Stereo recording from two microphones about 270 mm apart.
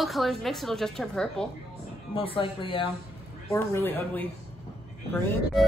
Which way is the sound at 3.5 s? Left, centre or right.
Centre.